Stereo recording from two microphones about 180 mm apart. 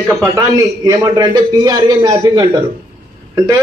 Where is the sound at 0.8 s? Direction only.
20° right (ahead or behind).